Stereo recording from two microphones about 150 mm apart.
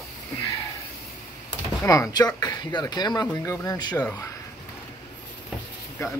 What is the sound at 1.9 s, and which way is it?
Speech, 25° left (ahead or behind).